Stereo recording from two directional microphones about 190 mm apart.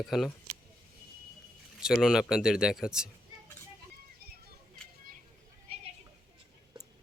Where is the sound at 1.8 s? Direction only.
5° right (ahead or behind).